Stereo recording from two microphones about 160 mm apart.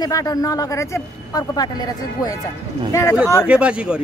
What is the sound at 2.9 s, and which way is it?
Speech, 20° left (ahead or behind).